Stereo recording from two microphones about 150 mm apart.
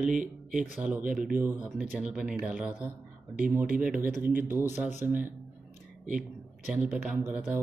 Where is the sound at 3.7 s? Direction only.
65° right (ahead or behind).